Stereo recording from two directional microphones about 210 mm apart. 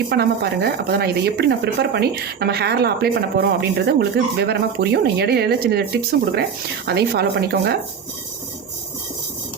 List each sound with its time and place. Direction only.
0.1 s speech: 50° right (ahead or behind)